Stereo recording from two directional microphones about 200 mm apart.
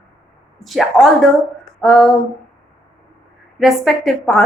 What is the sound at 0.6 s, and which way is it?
A woman's voice, centre (ahead or behind).